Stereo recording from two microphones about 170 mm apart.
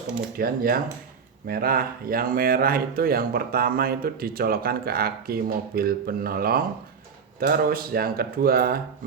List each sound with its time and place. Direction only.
0.3 s speech: 60° right (ahead or behind)